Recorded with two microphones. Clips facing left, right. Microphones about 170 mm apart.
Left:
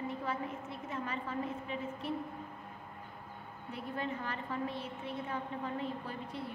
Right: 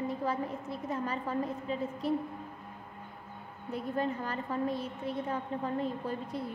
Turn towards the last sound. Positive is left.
turn(degrees=-40)  # may be behind; listen again after turning